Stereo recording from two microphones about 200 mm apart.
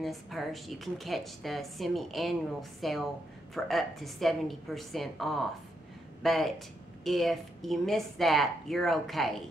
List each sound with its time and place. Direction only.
0.0 s a woman's voice: centre (ahead or behind)